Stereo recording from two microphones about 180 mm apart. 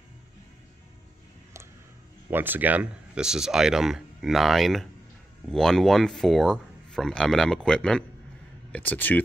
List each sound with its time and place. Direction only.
2.3 s speech: 10° right (ahead or behind); by 9.2 s 10° left (ahead or behind)